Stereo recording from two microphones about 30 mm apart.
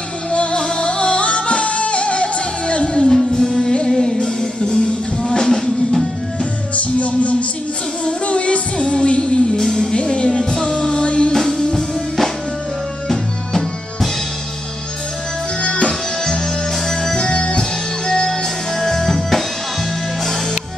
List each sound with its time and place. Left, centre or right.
0.3 s music: left
3.3 s music: centre
6.7 s music: left
9.6 s music: left
11.3 s music: centre
15.6 s music: left
16.8 s music: centre
17.2 s music: left
18.8 s music: centre